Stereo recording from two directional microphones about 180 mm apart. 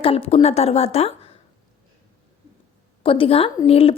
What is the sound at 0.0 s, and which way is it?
Speech, 30° left (ahead or behind).